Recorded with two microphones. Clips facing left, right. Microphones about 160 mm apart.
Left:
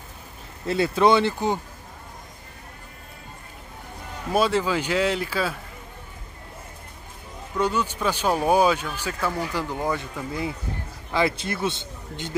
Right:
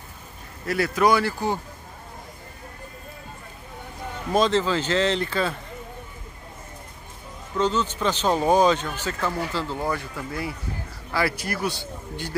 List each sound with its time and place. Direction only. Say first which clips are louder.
0.7 s a man's voice: left 2 dB; 25° left (ahead or behind)
4.3 s speech: right 1 dB; 10° left (ahead or behind)
7.5 s a man's voice: right 1 dB; 10° left (ahead or behind)